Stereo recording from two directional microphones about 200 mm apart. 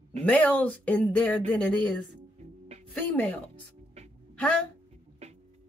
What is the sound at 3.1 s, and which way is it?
Speech, 10° left (ahead or behind).